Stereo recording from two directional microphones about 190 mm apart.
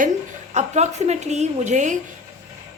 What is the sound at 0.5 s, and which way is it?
A woman's voice, 35° right (ahead or behind).